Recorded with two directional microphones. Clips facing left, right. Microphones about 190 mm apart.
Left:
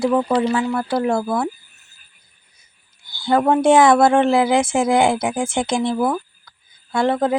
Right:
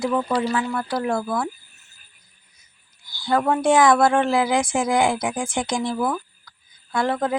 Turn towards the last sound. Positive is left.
turn(degrees=25)  # may be behind; listen again after turning